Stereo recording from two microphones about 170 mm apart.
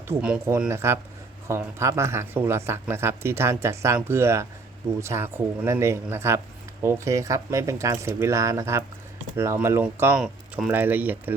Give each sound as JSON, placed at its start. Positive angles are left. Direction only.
{"t": 0.1, "sound": "speech", "side_deg": -5}